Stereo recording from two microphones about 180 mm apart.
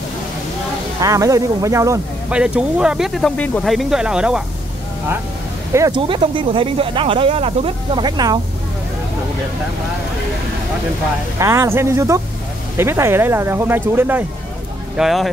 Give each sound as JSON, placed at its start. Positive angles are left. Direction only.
{"t": 1.0, "sound": "speech", "side_deg": -20}
{"t": 2.3, "sound": "speech", "side_deg": -5}
{"t": 5.7, "sound": "speech", "side_deg": -15}
{"t": 5.9, "sound": "speech", "side_deg": -30}
{"t": 11.3, "sound": "speech", "side_deg": -15}